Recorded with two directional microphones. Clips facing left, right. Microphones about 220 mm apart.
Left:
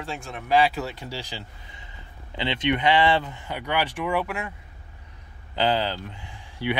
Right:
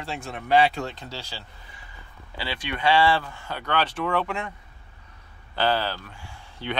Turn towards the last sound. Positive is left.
turn(degrees=15)  # may be behind; listen again after turning